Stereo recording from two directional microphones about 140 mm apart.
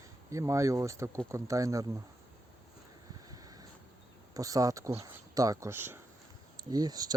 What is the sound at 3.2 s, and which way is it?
Vehicle, 25° right (ahead or behind).